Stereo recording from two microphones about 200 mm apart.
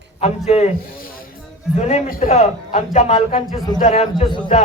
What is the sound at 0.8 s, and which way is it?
Speech, 45° left (ahead or behind).